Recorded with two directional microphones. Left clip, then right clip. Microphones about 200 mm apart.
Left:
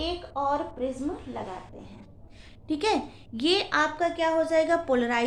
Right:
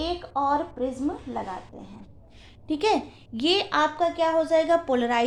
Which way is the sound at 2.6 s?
25° right (ahead or behind).